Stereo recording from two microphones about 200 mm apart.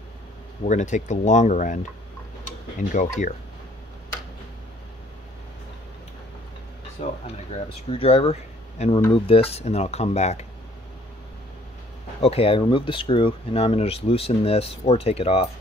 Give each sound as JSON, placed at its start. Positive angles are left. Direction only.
{"t": 0.7, "sound": "speech", "side_deg": 35}
{"t": 2.9, "sound": "speech", "side_deg": 40}
{"t": 7.0, "sound": "speech", "side_deg": 30}
{"t": 12.2, "sound": "speech", "side_deg": 30}